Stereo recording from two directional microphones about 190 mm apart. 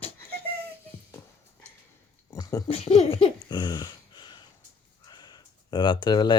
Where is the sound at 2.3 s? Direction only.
15° left (ahead or behind).